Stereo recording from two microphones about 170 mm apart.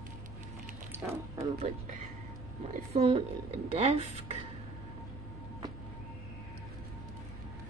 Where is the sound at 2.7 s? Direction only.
40° right (ahead or behind).